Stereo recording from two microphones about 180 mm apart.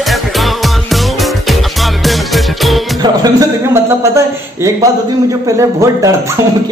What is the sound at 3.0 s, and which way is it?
A man's voice, 20° right (ahead or behind).